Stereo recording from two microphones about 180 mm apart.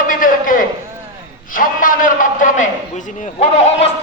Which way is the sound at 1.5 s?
50° left (ahead or behind).